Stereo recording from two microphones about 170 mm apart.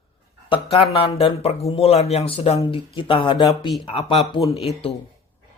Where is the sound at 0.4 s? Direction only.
30° left (ahead or behind).